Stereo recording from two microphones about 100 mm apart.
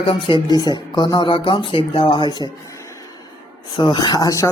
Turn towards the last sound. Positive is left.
turn(degrees=35)  # may be behind; listen again after turning